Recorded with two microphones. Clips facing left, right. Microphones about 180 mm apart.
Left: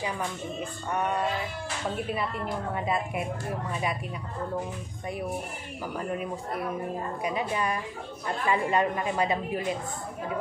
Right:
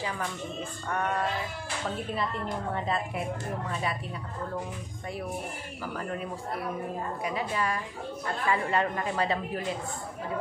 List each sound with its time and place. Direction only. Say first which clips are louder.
0.6 s a woman's voice: left 2 dB; 15° left (ahead or behind)
5.9 s a woman's voice: left 3 dB; 15° left (ahead or behind)
7.2 s a woman's voice: left 2 dB; 20° left (ahead or behind)